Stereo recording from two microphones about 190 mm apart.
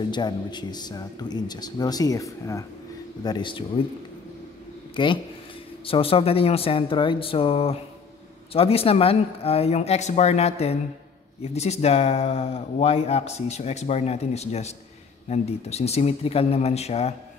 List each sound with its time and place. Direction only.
0.1 s speech: 25° left (ahead or behind)
4.9 s speech: 25° left (ahead or behind)